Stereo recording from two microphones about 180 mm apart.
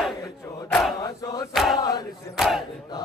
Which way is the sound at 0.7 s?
5° left (ahead or behind).